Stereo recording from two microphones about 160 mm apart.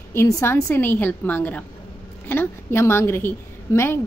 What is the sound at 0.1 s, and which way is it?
A woman's voice, 15° left (ahead or behind).